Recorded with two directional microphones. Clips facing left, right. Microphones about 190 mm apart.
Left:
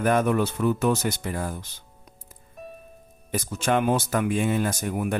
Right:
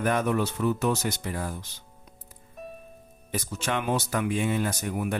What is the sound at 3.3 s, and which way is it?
Speech, 50° left (ahead or behind).